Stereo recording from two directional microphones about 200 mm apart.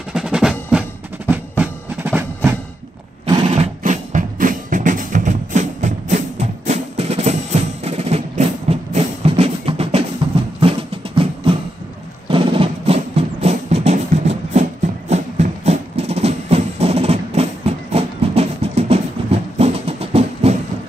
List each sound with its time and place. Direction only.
0.1 s percussion: 5° right (ahead or behind)
1.6 s music: 10° right (ahead or behind)
3.3 s music: 25° right (ahead or behind)